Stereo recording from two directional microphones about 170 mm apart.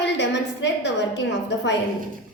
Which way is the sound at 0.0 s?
90° left.